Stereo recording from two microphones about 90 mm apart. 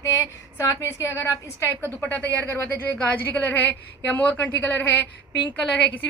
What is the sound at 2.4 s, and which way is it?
A woman's voice, 30° left (ahead or behind).